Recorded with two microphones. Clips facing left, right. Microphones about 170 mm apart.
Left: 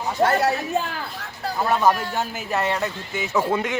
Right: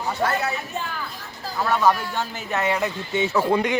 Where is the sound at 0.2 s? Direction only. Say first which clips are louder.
Left 6 dB; 30° left (ahead or behind).